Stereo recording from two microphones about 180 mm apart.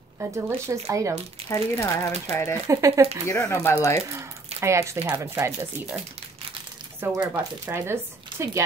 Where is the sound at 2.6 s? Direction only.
15° right (ahead or behind).